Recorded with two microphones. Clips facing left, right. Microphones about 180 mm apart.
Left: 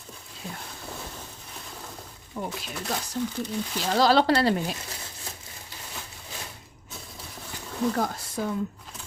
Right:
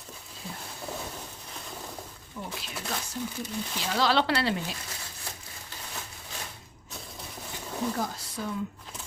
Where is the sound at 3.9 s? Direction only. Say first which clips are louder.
Left 5 dB; 40° left (ahead or behind).